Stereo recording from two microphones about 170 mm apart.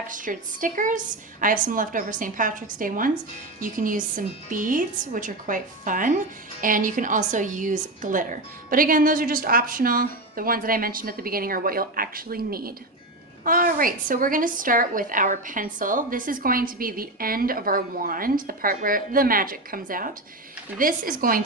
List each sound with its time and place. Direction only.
0.1 s a woman's voice: 50° right (ahead or behind)